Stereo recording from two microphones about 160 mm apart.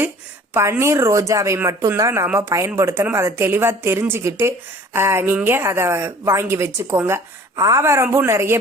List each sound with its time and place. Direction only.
0.5 s a woman's voice: 15° right (ahead or behind)